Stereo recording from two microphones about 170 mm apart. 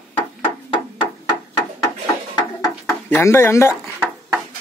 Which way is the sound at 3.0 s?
10° left (ahead or behind).